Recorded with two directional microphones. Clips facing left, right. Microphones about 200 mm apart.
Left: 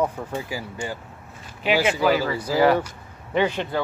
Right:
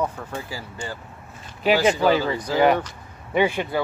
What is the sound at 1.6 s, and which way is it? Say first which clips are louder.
Speech: right 3 dB; 40° right (ahead or behind).